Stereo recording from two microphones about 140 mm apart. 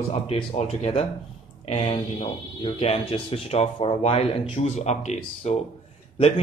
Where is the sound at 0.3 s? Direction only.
45° left (ahead or behind).